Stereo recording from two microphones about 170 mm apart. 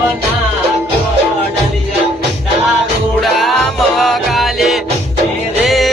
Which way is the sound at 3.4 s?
Centre (ahead or behind).